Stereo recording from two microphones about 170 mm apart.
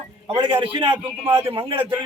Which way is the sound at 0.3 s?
30° right (ahead or behind).